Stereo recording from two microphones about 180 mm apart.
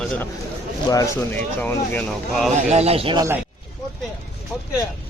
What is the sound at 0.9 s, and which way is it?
Speech, 15° left (ahead or behind).